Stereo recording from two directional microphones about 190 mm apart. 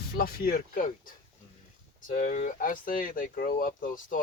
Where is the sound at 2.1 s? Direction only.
40° left (ahead or behind).